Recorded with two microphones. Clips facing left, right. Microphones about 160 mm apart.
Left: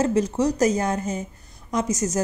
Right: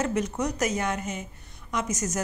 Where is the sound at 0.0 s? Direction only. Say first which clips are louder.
Left 6 dB; 30° left (ahead or behind).